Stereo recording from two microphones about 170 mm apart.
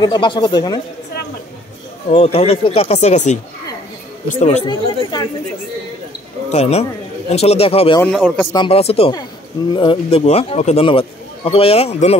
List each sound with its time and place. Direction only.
0.0 s speech: 25° left (ahead or behind)
2.0 s a man's voice: 35° left (ahead or behind)
4.6 s speech: 25° left (ahead or behind)
6.5 s a man's voice: 40° left (ahead or behind)
8.1 s a man's voice: centre (ahead or behind)
8.5 s a man's voice: 35° left (ahead or behind)